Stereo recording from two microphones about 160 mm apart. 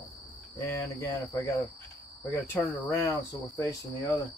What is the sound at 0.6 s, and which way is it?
Speech, 15° left (ahead or behind).